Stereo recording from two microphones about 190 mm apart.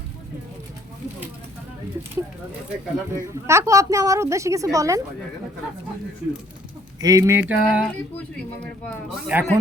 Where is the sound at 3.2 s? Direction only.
15° right (ahead or behind).